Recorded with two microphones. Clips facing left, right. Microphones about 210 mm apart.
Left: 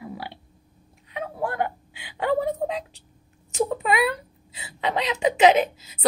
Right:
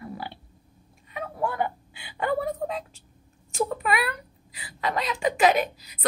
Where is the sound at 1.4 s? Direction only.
15° left (ahead or behind).